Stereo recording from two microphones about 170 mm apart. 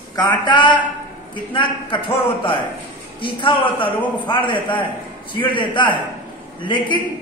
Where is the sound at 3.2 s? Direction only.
30° left (ahead or behind).